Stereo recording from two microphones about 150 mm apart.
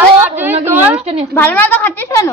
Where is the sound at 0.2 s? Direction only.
15° right (ahead or behind).